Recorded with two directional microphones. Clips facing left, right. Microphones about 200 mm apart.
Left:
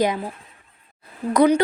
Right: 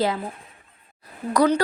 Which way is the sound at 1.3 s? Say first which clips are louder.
Left 3 dB; 20° left (ahead or behind).